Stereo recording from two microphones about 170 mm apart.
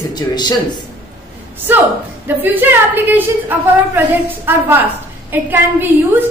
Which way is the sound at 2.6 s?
10° right (ahead or behind).